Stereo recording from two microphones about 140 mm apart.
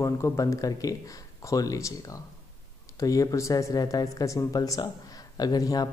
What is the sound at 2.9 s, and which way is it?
Speech, 25° left (ahead or behind).